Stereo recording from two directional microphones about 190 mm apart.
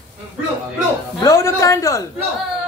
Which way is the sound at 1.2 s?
15° left (ahead or behind).